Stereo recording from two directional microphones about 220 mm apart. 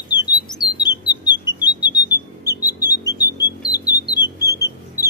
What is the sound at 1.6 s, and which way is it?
Music, 10° right (ahead or behind).